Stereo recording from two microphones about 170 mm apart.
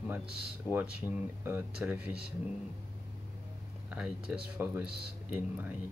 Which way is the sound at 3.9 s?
5° right (ahead or behind).